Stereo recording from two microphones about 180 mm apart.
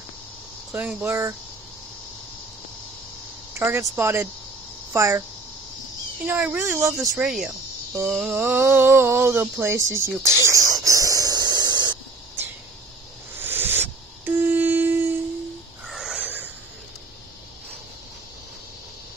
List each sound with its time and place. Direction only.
0.7 s speech: 5° right (ahead or behind)
3.5 s speech: 15° right (ahead or behind)
6.2 s speech: 10° right (ahead or behind)
7.2 s speech: centre (ahead or behind)
10.2 s a sound: 15° right (ahead or behind)
13.4 s a sound: 10° right (ahead or behind)